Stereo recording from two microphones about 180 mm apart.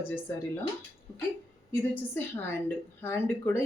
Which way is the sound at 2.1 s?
10° left (ahead or behind).